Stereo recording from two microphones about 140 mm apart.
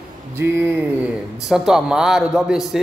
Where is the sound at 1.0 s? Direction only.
5° right (ahead or behind).